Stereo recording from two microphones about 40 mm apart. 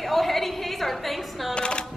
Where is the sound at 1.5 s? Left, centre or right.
Left.